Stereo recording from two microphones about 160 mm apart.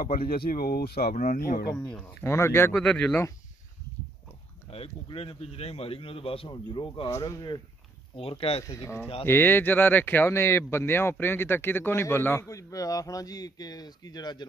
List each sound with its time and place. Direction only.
0.0 s speech: 65° left (ahead or behind); by 1.1 s 85° left
1.1 s speech: 55° left (ahead or behind)
1.9 s speech: 10° left (ahead or behind)
2.7 s speech: 5° left (ahead or behind)
4.6 s a man's voice: 35° left (ahead or behind)
7.1 s speech: 20° left (ahead or behind)
8.2 s a man's voice: 35° left (ahead or behind)
8.6 s speech: 20° left (ahead or behind)